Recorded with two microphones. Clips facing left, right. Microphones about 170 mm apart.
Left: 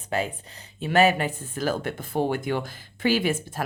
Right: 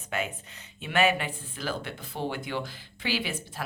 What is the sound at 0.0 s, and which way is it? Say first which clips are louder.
Speech: left 5 dB; 35° left (ahead or behind).